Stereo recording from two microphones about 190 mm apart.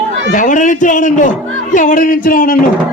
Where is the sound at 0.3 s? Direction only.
40° left (ahead or behind).